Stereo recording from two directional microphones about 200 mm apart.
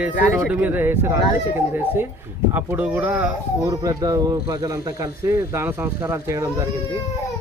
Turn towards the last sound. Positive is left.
turn(degrees=-15)  # may be behind; listen again after turning